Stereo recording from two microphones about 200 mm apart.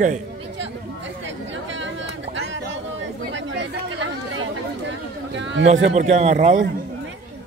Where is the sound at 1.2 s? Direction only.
65° right (ahead or behind).